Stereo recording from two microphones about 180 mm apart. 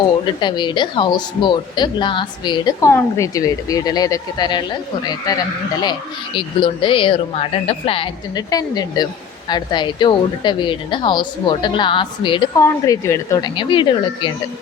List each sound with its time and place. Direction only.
0.3 s speech: 25° left (ahead or behind)
12.5 s speech: 15° left (ahead or behind)